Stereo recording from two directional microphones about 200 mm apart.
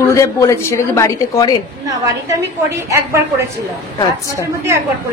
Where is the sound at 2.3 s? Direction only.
15° right (ahead or behind).